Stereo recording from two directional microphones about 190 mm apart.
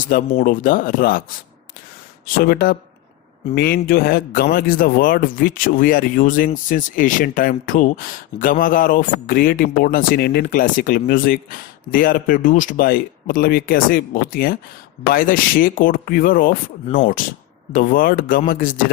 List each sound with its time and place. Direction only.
0.1 s speech: 45° left (ahead or behind)
2.2 s speech: 55° left (ahead or behind)